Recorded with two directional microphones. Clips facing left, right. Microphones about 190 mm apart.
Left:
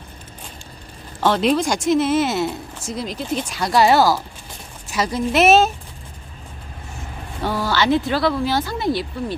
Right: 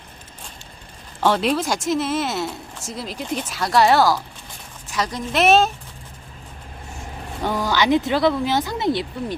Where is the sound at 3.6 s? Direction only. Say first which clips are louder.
Left 1 dB; centre (ahead or behind).